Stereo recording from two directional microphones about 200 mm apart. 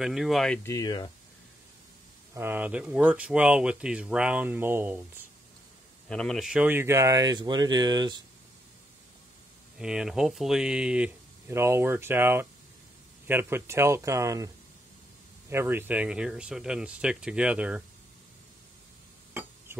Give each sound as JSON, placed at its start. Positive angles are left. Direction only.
{"t": 0.0, "sound": "speech", "side_deg": 0}
{"t": 0.7, "sound": "speech", "side_deg": 20}
{"t": 2.3, "sound": "speech", "side_deg": -10}
{"t": 6.0, "sound": "speech", "side_deg": 5}
{"t": 9.8, "sound": "speech", "side_deg": -5}
{"t": 15.5, "sound": "speech", "side_deg": -10}